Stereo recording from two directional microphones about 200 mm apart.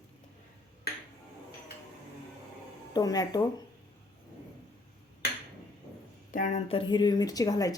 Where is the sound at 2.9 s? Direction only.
20° left (ahead or behind).